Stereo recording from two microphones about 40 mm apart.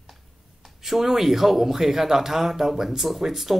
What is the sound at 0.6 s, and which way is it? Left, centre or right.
A man's voice, centre.